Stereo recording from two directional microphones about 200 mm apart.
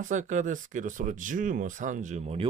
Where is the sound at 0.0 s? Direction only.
40° right (ahead or behind).